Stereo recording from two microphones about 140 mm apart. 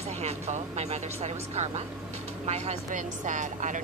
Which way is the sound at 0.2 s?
50° right (ahead or behind).